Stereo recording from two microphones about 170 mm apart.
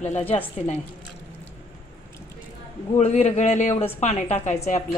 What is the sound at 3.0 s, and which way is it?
A man's voice, 40° left (ahead or behind).